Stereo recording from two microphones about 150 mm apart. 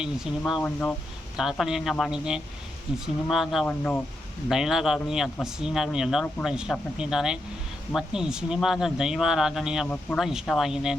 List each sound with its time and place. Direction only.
0.0 s speech: 5° right (ahead or behind)
0.6 s speech: 10° left (ahead or behind)
1.4 s speech: 5° right (ahead or behind)
4.4 s speech: centre (ahead or behind)